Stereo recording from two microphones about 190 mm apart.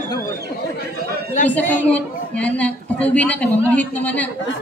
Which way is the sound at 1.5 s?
10° left (ahead or behind).